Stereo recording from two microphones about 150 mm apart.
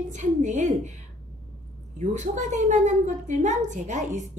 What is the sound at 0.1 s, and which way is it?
Speech, 55° right (ahead or behind).